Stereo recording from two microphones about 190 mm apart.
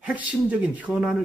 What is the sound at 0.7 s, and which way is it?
Speech, 5° right (ahead or behind).